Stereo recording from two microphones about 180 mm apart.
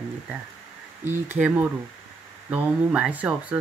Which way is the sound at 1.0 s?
10° right (ahead or behind).